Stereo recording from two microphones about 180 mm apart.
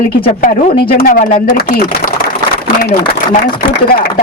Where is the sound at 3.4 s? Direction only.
55° left (ahead or behind).